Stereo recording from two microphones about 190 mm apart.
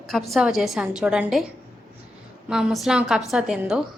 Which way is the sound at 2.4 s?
Centre (ahead or behind).